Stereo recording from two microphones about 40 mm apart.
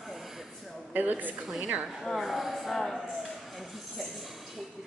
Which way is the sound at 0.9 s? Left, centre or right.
Right.